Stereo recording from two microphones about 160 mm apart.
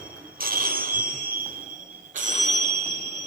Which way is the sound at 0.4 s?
65° right (ahead or behind).